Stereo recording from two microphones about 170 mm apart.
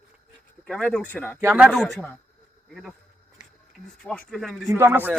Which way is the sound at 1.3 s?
10° right (ahead or behind).